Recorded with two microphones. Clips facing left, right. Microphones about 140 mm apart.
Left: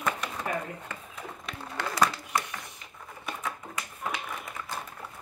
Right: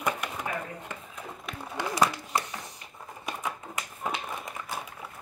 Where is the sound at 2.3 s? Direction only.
25° right (ahead or behind).